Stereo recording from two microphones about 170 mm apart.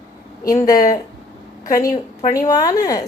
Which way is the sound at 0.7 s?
55° left (ahead or behind).